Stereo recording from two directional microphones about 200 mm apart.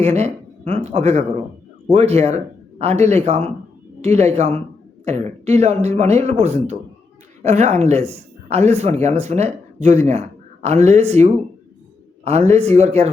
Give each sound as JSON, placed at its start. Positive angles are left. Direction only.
{"t": 0.0, "sound": "speech", "side_deg": -35}